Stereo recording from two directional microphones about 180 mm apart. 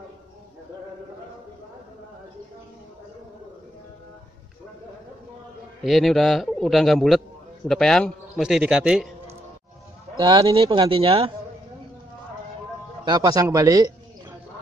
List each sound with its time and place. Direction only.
5.9 s a man's voice: centre (ahead or behind)
10.1 s a man's voice: 20° right (ahead or behind)
13.0 s a man's voice: 20° right (ahead or behind)